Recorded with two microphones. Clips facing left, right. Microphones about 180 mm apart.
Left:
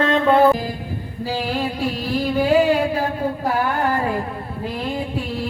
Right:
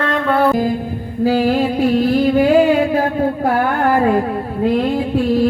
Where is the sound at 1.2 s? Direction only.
50° right (ahead or behind).